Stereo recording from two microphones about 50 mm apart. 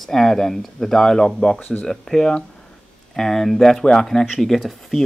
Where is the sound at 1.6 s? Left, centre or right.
Left.